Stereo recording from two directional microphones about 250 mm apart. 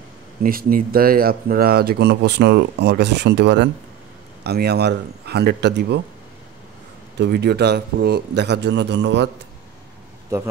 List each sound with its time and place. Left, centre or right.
0.4 s speech: right
7.2 s a man's voice: right